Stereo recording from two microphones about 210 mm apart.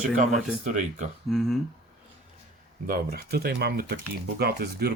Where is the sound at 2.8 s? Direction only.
45° right (ahead or behind).